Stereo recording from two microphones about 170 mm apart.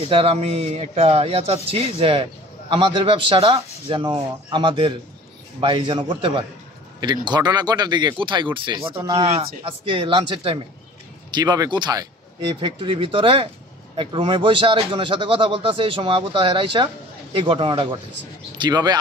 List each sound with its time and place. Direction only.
0.1 s speech: 35° right (ahead or behind)